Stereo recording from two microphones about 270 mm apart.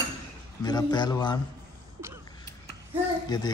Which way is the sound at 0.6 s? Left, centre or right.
Centre.